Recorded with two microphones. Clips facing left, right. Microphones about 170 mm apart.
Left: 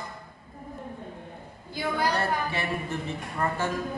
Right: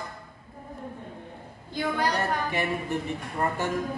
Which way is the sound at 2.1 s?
15° right (ahead or behind).